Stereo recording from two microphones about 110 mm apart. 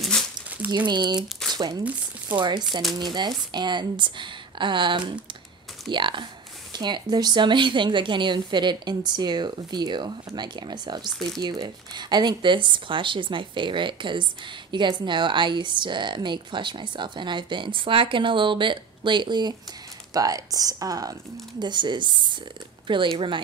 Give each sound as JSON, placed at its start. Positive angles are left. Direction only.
{"t": 0.0, "sound": "crumpling", "side_deg": 5}
{"t": 0.7, "sound": "speech", "side_deg": -45}
{"t": 1.5, "sound": "crumpling", "side_deg": -40}
{"t": 2.3, "sound": "a woman's voice", "side_deg": -45}
{"t": 11.1, "sound": "speech", "side_deg": 0}
{"t": 11.3, "sound": "a woman's voice", "side_deg": -40}